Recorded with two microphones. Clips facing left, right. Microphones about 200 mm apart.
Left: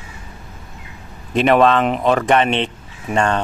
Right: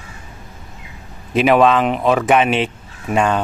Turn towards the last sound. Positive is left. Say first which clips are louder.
# right 1 dB
turn(degrees=-5)  # may be behind; listen again after turning